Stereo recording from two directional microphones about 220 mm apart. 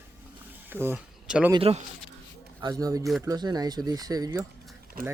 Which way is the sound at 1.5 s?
25° right (ahead or behind).